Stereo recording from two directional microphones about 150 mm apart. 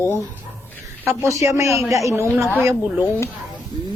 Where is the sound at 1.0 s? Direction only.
20° right (ahead or behind).